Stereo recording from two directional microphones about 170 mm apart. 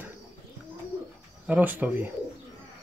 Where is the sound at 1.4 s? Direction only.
10° right (ahead or behind).